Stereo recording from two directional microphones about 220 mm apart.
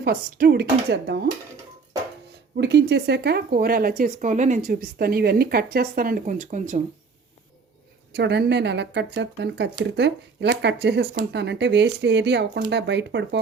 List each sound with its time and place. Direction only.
0.0 s speech: 45° right (ahead or behind)
2.6 s speech: 50° right (ahead or behind); by 6.8 s 35° right (ahead or behind)
8.1 s speech: 50° right (ahead or behind)